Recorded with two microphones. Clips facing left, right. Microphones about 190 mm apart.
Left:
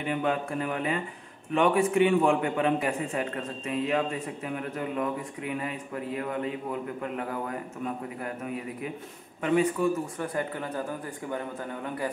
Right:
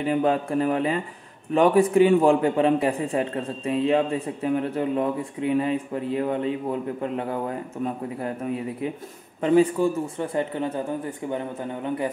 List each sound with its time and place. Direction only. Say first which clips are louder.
0.0 s a man's voice: right 6 dB; 35° right (ahead or behind)
9.4 s speech: right 6 dB; 30° right (ahead or behind)